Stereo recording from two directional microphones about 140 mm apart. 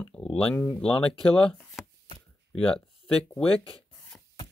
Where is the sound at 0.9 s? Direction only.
40° left (ahead or behind).